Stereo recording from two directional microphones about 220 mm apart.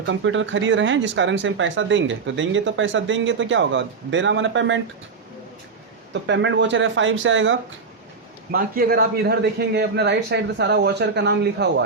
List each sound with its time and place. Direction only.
0.0 s speech: 60° right (ahead or behind)
6.2 s speech: 55° right (ahead or behind)
8.5 s a man's voice: 40° right (ahead or behind)